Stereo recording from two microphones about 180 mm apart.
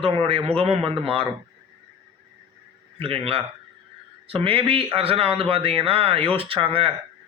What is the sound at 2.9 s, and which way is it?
Speech, 30° right (ahead or behind).